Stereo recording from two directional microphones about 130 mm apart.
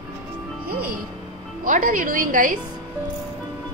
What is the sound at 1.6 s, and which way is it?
Speech, 90° right.